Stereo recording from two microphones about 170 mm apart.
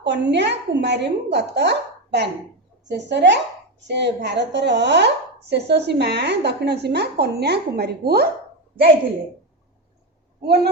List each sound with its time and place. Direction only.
0.0 s speech: 90° right; by 8.3 s 65° right (ahead or behind)
10.4 s speech: 70° right (ahead or behind)